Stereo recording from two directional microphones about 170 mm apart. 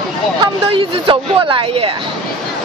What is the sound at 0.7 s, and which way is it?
Speech, 30° right (ahead or behind).